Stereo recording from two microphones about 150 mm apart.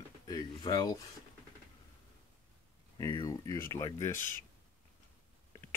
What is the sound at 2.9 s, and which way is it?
Speech, 25° left (ahead or behind).